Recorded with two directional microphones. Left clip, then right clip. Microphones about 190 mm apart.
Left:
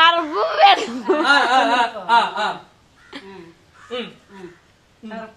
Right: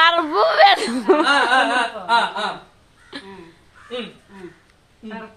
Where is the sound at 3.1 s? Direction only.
15° right (ahead or behind).